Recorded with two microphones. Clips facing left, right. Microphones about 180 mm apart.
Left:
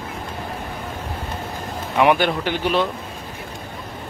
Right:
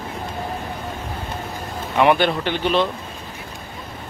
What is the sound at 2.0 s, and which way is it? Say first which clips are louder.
Speech: even; 10° left (ahead or behind).